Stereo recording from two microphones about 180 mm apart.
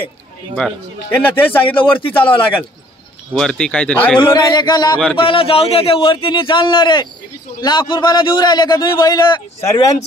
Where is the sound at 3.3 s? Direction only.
5° left (ahead or behind).